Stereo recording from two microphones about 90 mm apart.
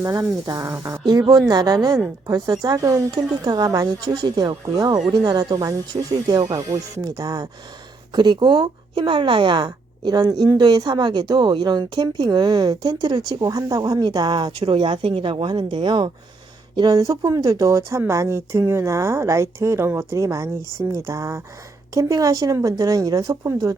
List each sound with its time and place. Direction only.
0.0 s speech: 35° right (ahead or behind)
1.3 s speech: 50° right (ahead or behind)
3.2 s speech: 50° right (ahead or behind)
4.6 s speech: 45° right (ahead or behind)
16.7 s speech: 45° right (ahead or behind)